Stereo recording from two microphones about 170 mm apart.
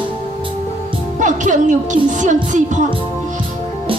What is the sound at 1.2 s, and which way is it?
Music, 45° right (ahead or behind).